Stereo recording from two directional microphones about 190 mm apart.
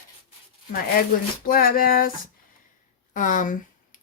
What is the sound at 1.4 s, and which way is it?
Speech, 50° left (ahead or behind).